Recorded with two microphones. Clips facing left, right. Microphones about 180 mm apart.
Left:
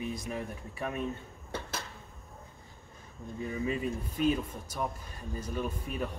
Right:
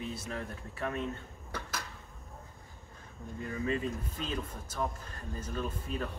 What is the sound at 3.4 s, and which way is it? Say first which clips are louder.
Speech: left 1 dB; 10° left (ahead or behind).